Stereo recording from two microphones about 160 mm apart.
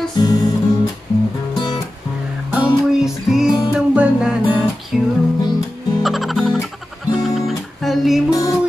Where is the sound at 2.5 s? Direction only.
5° right (ahead or behind).